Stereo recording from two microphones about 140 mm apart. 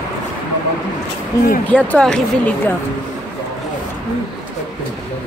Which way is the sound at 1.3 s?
25° left (ahead or behind).